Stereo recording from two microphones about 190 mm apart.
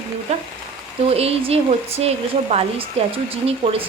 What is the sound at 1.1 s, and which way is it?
Speech, 30° right (ahead or behind).